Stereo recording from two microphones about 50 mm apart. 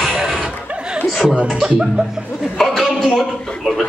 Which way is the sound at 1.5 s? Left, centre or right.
Centre.